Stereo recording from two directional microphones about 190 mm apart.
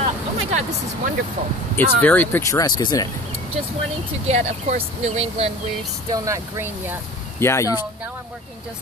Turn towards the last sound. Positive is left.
turn(degrees=15)  # may be behind; listen again after turning